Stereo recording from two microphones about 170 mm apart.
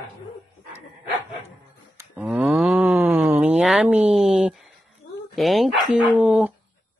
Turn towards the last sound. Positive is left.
turn(degrees=-10)  # may be behind; listen again after turning